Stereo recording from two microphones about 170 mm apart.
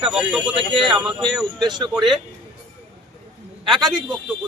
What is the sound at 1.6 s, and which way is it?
Speech, 25° right (ahead or behind).